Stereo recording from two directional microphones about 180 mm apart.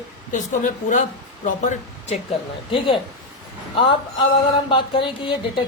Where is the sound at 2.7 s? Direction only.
30° left (ahead or behind).